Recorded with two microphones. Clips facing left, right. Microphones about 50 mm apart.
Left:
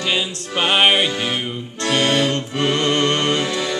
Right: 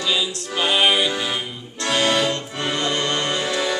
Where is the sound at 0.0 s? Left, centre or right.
Left.